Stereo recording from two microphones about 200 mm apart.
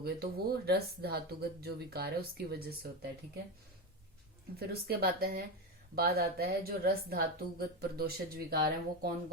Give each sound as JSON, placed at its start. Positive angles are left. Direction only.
{"t": 0.0, "sound": "a woman's voice", "side_deg": -50}
{"t": 4.6, "sound": "a woman's voice", "side_deg": -50}